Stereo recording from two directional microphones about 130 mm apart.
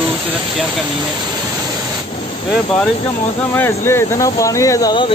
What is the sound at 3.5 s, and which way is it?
Speech, 20° left (ahead or behind).